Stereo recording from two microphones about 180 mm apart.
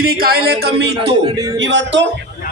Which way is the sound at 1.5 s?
90° right.